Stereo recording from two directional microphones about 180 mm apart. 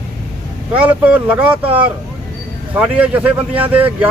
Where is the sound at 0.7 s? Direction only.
10° right (ahead or behind).